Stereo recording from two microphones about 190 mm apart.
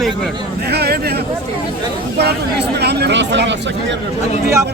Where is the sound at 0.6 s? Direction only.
60° right (ahead or behind).